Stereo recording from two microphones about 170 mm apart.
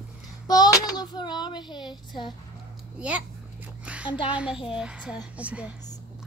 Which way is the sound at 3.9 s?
10° right (ahead or behind).